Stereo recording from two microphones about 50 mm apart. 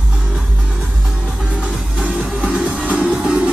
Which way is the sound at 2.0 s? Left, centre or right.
Right.